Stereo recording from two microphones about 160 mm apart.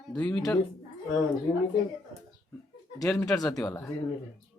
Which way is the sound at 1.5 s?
20° left (ahead or behind).